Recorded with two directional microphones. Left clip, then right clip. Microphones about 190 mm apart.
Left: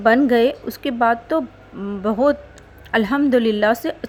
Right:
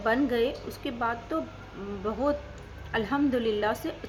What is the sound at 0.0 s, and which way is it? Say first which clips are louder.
A woman's voice: left 11 dB; 50° left (ahead or behind).